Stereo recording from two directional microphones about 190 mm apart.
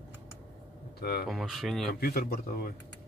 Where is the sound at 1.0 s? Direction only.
55° left (ahead or behind).